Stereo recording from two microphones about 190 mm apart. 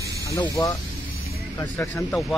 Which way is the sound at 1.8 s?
10° left (ahead or behind).